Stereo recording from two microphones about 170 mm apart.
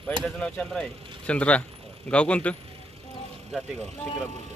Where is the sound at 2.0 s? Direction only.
5° left (ahead or behind).